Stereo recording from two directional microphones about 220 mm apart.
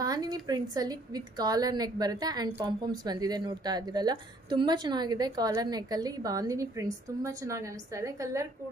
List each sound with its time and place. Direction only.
0.0 s a woman's voice: 15° right (ahead or behind)